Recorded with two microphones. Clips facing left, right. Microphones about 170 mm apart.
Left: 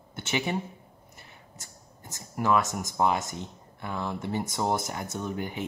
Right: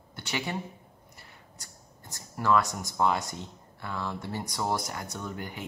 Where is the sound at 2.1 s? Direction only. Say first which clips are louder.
Even; 20° left (ahead or behind).